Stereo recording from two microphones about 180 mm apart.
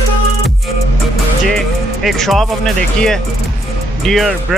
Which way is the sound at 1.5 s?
Centre (ahead or behind).